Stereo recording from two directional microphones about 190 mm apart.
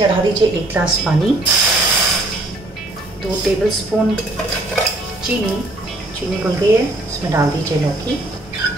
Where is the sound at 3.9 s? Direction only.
5° right (ahead or behind).